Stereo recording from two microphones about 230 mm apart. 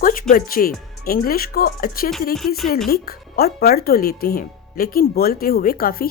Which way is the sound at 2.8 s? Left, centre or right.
Left.